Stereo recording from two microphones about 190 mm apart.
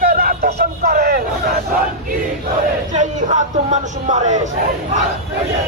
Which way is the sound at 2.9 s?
40° right (ahead or behind).